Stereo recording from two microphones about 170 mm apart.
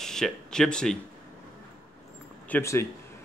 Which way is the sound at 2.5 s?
15° left (ahead or behind).